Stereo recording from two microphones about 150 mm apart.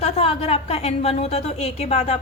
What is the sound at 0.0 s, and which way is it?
A woman's voice, 45° left (ahead or behind).